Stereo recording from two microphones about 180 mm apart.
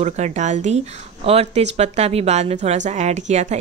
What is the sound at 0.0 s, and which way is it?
Speech, 40° right (ahead or behind).